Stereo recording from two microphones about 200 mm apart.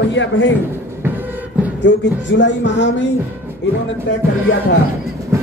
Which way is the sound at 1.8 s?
60° left (ahead or behind).